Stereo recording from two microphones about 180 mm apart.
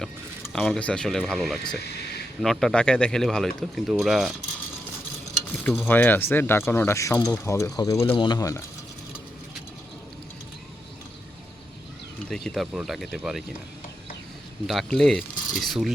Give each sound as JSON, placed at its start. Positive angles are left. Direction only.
{"t": 0.5, "sound": "speech", "side_deg": 5}
{"t": 5.6, "sound": "speech", "side_deg": 0}
{"t": 5.9, "sound": "speech", "side_deg": 10}
{"t": 12.3, "sound": "speech", "side_deg": 5}
{"t": 14.7, "sound": "speech", "side_deg": 0}